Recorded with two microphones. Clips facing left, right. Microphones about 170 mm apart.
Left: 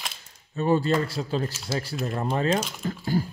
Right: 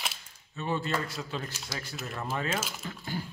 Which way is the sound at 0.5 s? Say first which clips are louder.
Left 9 dB; 40° left (ahead or behind).